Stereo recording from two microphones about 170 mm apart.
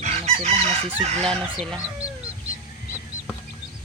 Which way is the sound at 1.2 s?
5° left (ahead or behind).